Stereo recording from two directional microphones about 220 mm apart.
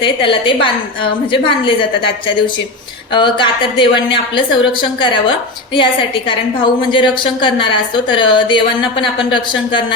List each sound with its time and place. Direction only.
0.0 s speech: 20° left (ahead or behind)